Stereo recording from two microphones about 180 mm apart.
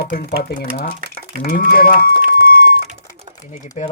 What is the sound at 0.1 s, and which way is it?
Speech, 60° left (ahead or behind).